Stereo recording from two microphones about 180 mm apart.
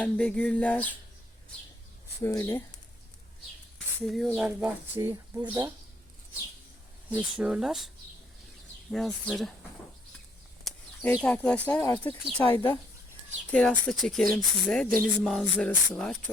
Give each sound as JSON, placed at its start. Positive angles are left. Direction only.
{"t": 0.0, "sound": "speech", "side_deg": 5}
{"t": 2.2, "sound": "speech", "side_deg": 15}
{"t": 4.0, "sound": "speech", "side_deg": 0}
{"t": 4.9, "sound": "speech", "side_deg": -15}
{"t": 7.1, "sound": "speech", "side_deg": -5}
{"t": 8.9, "sound": "speech", "side_deg": 5}
{"t": 10.6, "sound": "a sound", "side_deg": 0}
{"t": 11.2, "sound": "speech", "side_deg": 5}